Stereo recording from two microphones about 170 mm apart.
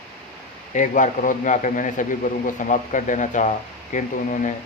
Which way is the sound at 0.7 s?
50° left (ahead or behind).